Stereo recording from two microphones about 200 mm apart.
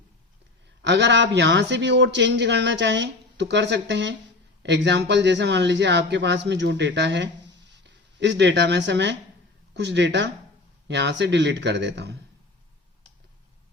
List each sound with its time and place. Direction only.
0.8 s a man's voice: 60° right (ahead or behind)